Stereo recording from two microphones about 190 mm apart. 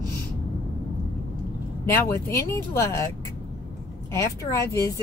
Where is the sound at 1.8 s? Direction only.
15° left (ahead or behind).